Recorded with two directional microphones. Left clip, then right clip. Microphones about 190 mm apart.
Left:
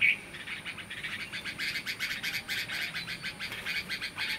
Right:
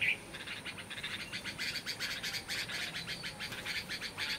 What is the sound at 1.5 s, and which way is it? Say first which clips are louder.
Bird: left 5 dB; 20° left (ahead or behind).